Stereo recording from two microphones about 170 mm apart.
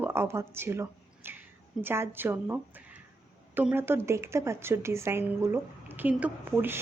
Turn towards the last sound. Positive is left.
turn(degrees=-15)  # may be behind; listen again after turning